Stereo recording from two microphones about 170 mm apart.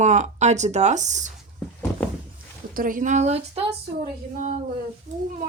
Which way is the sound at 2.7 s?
55° right (ahead or behind).